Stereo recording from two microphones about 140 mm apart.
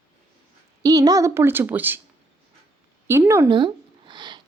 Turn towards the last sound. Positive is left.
turn(degrees=-30)  # may be behind; listen again after turning